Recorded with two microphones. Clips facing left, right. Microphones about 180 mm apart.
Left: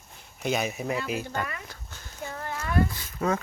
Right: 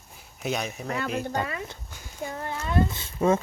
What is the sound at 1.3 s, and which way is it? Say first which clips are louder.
Speech: right 3 dB; 25° right (ahead or behind).